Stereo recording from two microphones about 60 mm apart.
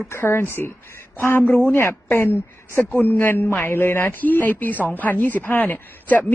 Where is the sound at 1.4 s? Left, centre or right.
Left.